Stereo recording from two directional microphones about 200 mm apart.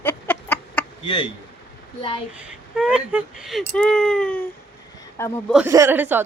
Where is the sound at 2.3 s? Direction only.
5° right (ahead or behind); by 5.3 s 10° left (ahead or behind).